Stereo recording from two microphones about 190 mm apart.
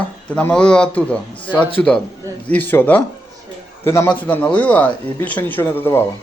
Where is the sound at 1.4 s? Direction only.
25° left (ahead or behind).